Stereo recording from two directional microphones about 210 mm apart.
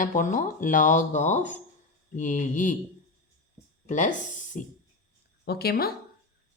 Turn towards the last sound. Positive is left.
turn(degrees=45)  # may be behind; listen again after turning